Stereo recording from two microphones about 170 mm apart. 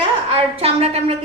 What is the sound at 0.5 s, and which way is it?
Speech, 35° right (ahead or behind).